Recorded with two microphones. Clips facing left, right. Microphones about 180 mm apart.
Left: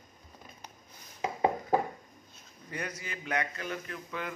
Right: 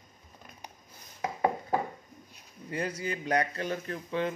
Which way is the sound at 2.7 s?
30° right (ahead or behind).